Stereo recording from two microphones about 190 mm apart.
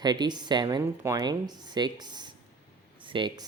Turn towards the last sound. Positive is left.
turn(degrees=-25)  # may be behind; listen again after turning